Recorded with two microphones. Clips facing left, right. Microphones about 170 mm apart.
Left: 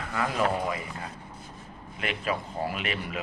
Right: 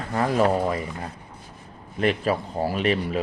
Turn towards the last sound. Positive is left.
turn(degrees=-35)  # may be behind; listen again after turning